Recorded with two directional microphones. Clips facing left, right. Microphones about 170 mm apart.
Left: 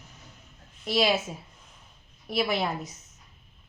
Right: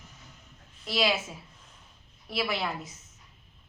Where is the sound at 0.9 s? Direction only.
25° left (ahead or behind).